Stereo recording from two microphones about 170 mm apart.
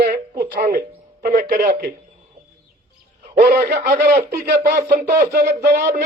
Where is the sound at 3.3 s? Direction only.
65° right (ahead or behind).